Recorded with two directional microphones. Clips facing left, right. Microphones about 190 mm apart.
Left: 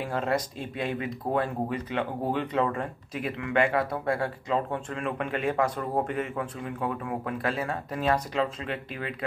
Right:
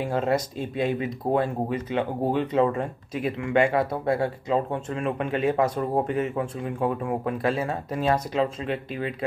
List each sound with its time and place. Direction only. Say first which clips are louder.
0.0 s speech: right 4 dB; 25° right (ahead or behind)